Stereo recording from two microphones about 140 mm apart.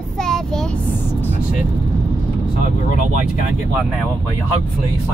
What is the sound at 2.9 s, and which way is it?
Speech, 75° left (ahead or behind).